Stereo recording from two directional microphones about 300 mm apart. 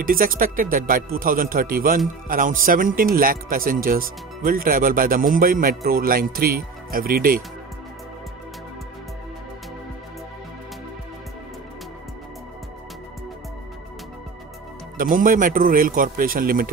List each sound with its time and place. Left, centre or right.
0.0 s a man's voice: right
15.0 s a man's voice: right